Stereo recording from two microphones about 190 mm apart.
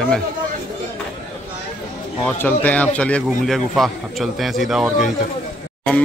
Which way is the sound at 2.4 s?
10° left (ahead or behind).